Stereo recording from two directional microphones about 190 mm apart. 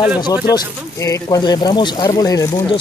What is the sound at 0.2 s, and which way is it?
Speech, 20° left (ahead or behind).